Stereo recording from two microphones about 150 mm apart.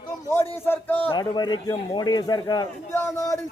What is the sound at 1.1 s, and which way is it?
Speech, 30° left (ahead or behind).